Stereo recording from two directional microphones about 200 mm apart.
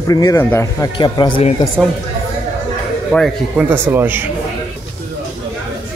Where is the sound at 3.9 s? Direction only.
10° right (ahead or behind).